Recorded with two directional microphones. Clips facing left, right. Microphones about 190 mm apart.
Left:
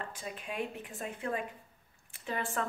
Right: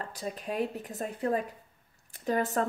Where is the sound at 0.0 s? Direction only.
40° right (ahead or behind).